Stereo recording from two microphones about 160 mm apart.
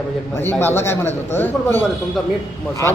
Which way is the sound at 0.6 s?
15° left (ahead or behind).